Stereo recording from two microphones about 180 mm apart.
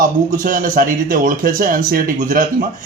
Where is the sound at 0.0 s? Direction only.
50° right (ahead or behind).